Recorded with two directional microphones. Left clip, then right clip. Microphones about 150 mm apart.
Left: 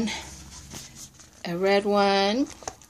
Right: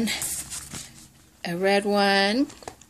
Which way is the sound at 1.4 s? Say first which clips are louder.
Even; 15° right (ahead or behind).